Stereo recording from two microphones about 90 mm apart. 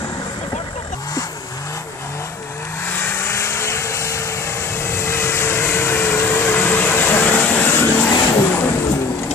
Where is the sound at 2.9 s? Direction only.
25° left (ahead or behind).